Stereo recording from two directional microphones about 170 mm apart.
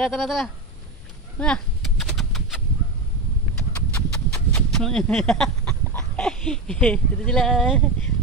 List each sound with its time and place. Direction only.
0.0 s speech: centre (ahead or behind)
1.4 s chicken: 5° left (ahead or behind)
3.5 s clip-clop: 5° left (ahead or behind)